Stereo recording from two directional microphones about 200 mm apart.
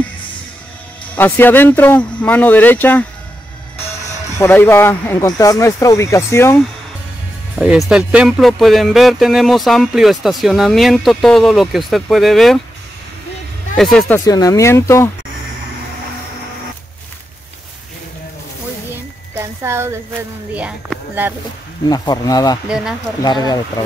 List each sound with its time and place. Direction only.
1.1 s speech: 10° left (ahead or behind)
4.4 s speech: 10° left (ahead or behind)
7.5 s speech: 5° right (ahead or behind)
13.7 s speech: centre (ahead or behind)
14.2 s speech: 15° left (ahead or behind)
19.3 s speech: 15° right (ahead or behind)
21.8 s speech: 20° left (ahead or behind)